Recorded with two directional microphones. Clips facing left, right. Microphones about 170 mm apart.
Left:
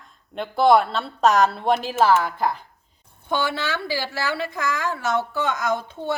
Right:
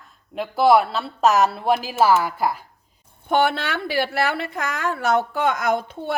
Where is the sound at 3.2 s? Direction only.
60° right (ahead or behind).